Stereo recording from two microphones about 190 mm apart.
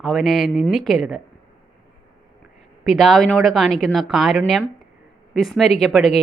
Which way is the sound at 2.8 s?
Centre (ahead or behind).